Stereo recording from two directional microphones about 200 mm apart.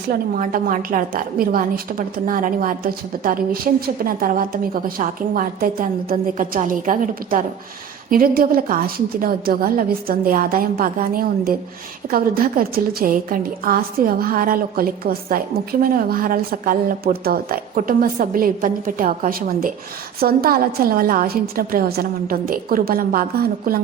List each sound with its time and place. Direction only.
0.1 s a woman's voice: 45° right (ahead or behind)